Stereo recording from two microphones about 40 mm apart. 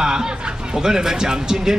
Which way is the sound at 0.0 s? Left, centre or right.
Centre.